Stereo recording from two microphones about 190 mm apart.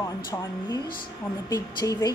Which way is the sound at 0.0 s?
20° left (ahead or behind).